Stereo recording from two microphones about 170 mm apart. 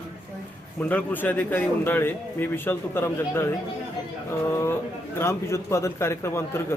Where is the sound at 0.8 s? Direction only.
10° left (ahead or behind).